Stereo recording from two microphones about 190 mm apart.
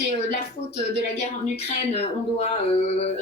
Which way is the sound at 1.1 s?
35° left (ahead or behind).